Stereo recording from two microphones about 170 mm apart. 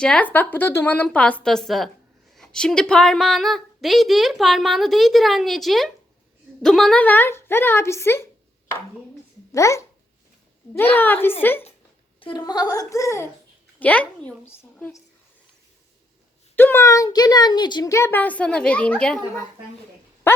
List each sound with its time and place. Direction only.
0.0 s a woman's voice: 5° left (ahead or behind)
9.5 s speech: 20° left (ahead or behind)
10.9 s speech: 10° left (ahead or behind)
12.2 s speech: 25° left (ahead or behind)
16.6 s speech: 15° left (ahead or behind)